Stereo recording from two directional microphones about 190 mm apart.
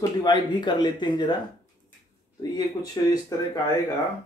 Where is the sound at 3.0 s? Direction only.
20° left (ahead or behind).